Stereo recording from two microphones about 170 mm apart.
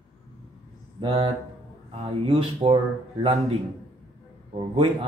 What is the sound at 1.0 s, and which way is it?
Speech, 30° right (ahead or behind).